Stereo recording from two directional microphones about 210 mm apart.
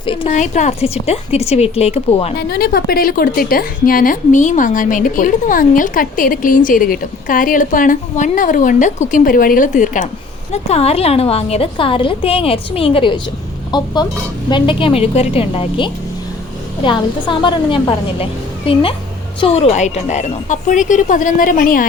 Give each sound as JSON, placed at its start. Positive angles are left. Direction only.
{"t": 0.0, "sound": "a woman's voice", "side_deg": 25}
{"t": 0.3, "sound": "a woman's voice", "side_deg": 35}
{"t": 2.5, "sound": "a woman's voice", "side_deg": 45}